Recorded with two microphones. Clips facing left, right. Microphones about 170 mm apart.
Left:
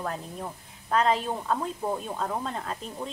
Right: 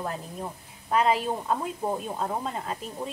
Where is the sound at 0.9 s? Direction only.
10° right (ahead or behind).